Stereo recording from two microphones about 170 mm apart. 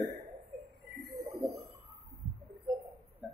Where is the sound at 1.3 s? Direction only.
20° right (ahead or behind).